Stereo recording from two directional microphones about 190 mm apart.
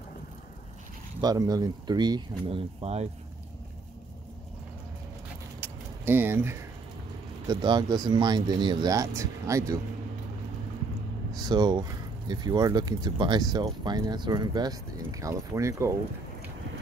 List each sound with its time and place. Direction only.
1.2 s speech: 20° right (ahead or behind)
5.6 s keys jangling: 10° right (ahead or behind)
7.4 s speech: 20° right (ahead or behind)
11.3 s speech: 20° right (ahead or behind)